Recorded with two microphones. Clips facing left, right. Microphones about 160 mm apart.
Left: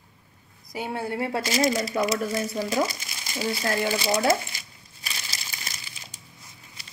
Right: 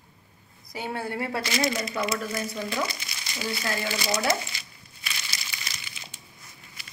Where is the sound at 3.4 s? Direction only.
30° left (ahead or behind).